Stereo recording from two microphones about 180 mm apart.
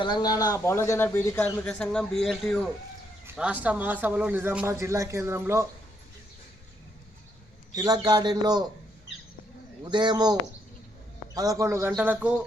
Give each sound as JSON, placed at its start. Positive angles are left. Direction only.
{"t": 0.0, "sound": "a man's voice", "side_deg": 25}
{"t": 7.8, "sound": "speech", "side_deg": -20}
{"t": 9.9, "sound": "speech", "side_deg": -25}
{"t": 11.3, "sound": "a man's voice", "side_deg": -20}